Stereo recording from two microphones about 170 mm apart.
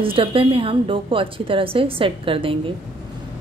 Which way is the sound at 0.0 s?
30° right (ahead or behind).